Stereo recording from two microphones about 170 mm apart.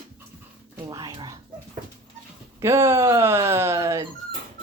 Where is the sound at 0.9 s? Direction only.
20° right (ahead or behind).